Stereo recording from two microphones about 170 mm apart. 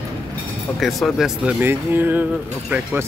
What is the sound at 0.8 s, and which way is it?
Speech, centre (ahead or behind).